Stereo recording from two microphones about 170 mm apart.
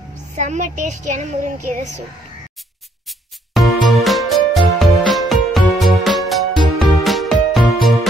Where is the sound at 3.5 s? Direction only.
Centre (ahead or behind).